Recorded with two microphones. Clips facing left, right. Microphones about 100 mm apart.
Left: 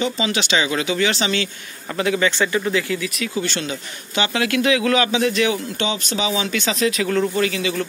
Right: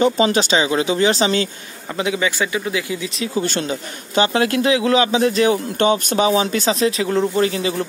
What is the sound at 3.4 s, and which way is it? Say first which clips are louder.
Speech: right 4 dB; 45° right (ahead or behind).